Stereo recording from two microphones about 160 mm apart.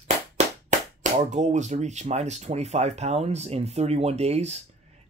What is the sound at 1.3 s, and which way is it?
Speech, 45° right (ahead or behind).